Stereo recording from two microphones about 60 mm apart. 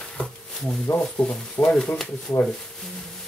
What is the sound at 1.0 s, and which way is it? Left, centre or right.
Speech, centre.